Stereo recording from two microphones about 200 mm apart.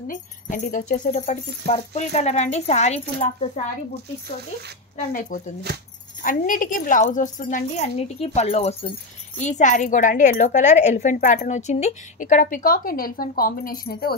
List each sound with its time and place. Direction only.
0.1 s a woman's voice: 40° left (ahead or behind)
5.3 s a woman's voice: 40° left (ahead or behind)